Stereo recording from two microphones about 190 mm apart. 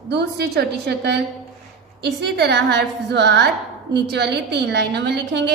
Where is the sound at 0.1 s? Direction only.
60° right (ahead or behind).